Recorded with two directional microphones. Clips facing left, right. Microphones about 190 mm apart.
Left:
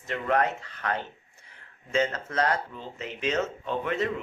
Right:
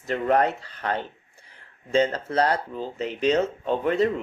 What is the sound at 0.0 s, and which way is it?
Speech, 40° right (ahead or behind).